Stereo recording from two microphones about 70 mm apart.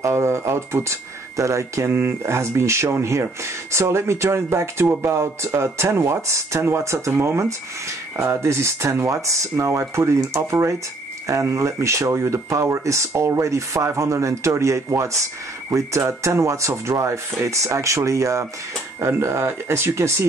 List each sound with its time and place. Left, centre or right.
0.0 s speech: right